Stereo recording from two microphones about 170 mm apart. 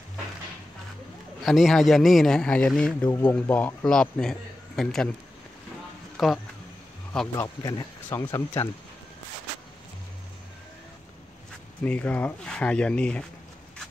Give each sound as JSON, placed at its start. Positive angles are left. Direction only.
{"t": 1.4, "sound": "a man's voice", "side_deg": 0}
{"t": 6.1, "sound": "speech", "side_deg": 0}
{"t": 7.3, "sound": "speech", "side_deg": 20}
{"t": 11.8, "sound": "speech", "side_deg": 10}